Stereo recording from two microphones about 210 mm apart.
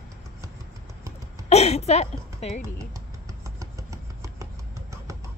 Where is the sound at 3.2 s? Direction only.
15° right (ahead or behind).